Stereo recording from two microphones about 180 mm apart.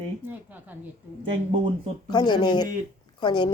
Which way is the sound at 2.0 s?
25° left (ahead or behind).